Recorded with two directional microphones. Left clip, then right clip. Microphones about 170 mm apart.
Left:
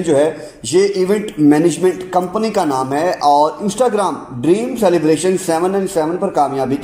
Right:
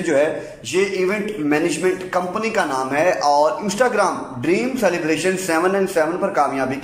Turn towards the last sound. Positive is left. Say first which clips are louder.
# left 3 dB
turn(degrees=30)  # may be behind; listen again after turning